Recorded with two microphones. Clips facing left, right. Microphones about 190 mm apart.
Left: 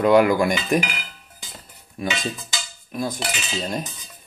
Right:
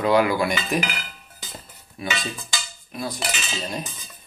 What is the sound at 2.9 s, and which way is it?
Cutlery, 45° left (ahead or behind).